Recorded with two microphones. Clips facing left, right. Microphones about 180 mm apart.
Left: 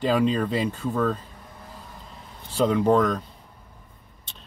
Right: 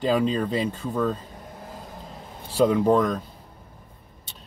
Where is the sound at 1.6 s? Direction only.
45° right (ahead or behind).